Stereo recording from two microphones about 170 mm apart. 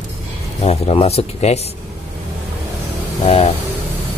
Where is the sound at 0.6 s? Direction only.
40° left (ahead or behind).